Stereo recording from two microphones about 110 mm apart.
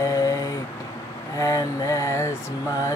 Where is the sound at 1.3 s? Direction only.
30° left (ahead or behind).